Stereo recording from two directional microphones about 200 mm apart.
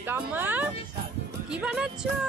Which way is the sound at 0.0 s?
10° right (ahead or behind).